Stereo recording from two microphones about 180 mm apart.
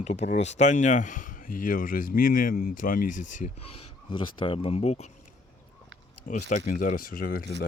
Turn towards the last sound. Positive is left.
turn(degrees=55)  # may be behind; listen again after turning